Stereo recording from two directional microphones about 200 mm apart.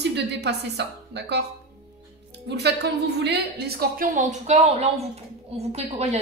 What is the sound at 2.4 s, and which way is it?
A woman's voice, 55° right (ahead or behind).